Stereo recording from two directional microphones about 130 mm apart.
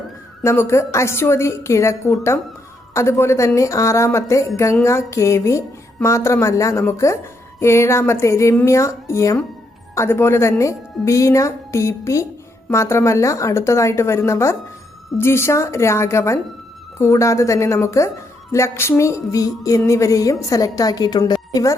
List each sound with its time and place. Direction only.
0.4 s a woman's voice: 20° left (ahead or behind)